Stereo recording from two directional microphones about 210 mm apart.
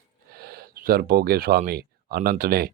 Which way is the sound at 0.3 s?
45° right (ahead or behind).